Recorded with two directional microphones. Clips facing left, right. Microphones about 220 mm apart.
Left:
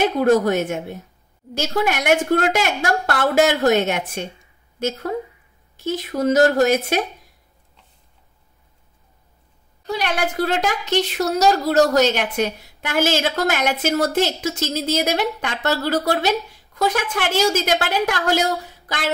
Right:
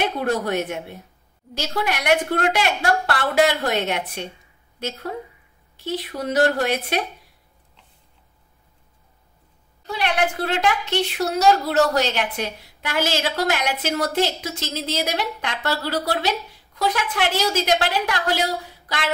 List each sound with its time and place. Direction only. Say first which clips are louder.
0.0 s a woman's voice: left 7 dB; 45° left (ahead or behind)
9.8 s a woman's voice: even; 40° left (ahead or behind)